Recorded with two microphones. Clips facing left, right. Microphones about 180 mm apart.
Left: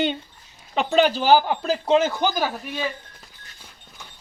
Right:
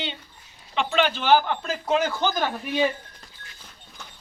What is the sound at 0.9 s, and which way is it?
Speech, 35° left (ahead or behind).